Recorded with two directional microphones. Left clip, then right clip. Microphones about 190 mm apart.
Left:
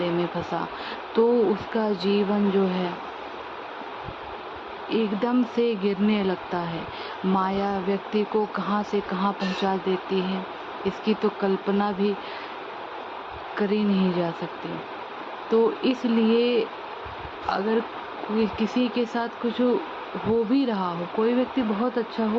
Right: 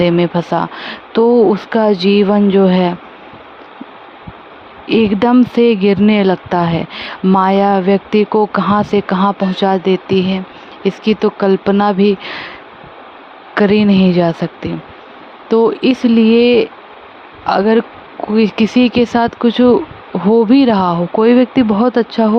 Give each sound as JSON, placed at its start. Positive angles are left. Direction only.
{"t": 0.0, "sound": "speech", "side_deg": -50}
{"t": 4.9, "sound": "speech", "side_deg": -55}
{"t": 13.6, "sound": "speech", "side_deg": -55}
{"t": 15.4, "sound": "speech", "side_deg": -50}